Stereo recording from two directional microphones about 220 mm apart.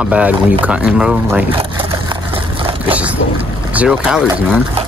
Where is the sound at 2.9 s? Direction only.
5° right (ahead or behind).